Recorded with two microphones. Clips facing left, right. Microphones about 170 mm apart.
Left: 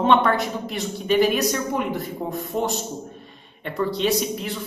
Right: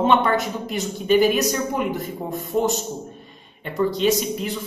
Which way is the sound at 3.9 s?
Centre (ahead or behind).